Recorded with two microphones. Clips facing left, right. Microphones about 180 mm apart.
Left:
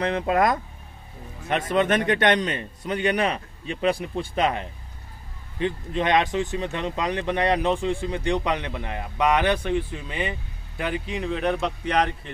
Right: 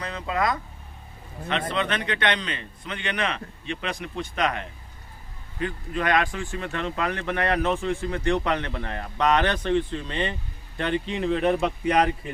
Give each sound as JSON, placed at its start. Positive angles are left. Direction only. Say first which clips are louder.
{"t": 0.0, "sound": "speech", "louder": "left 6 dB", "side_deg": 60}
{"t": 1.7, "sound": "a man's voice", "louder": "left 10 dB", "side_deg": 45}